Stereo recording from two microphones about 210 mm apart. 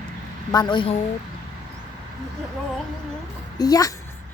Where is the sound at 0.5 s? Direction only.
20° left (ahead or behind).